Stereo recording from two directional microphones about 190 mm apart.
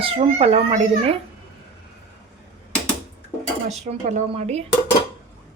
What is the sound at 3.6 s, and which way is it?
Speech, 35° right (ahead or behind).